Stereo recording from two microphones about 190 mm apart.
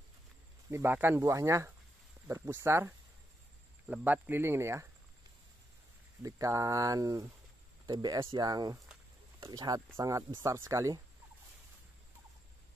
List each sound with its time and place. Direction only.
0.7 s speech: 15° right (ahead or behind)
6.2 s speech: 15° right (ahead or behind)